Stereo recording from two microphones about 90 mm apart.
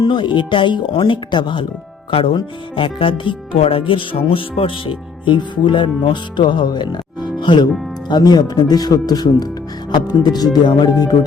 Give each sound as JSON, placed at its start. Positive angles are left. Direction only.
{"t": 0.1, "sound": "speech", "side_deg": 60}
{"t": 2.0, "sound": "speech", "side_deg": 70}